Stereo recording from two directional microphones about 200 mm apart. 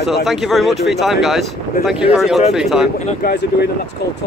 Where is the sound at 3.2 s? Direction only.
55° left (ahead or behind).